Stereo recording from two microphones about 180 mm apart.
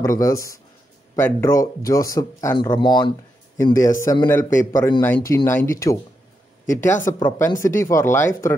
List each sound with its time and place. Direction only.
0.0 s speech: 15° left (ahead or behind)